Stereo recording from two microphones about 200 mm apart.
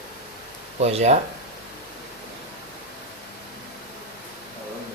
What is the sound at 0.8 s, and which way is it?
Speech, 35° right (ahead or behind).